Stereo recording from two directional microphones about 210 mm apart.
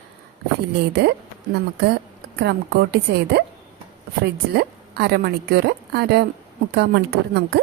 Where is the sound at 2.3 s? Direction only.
50° right (ahead or behind).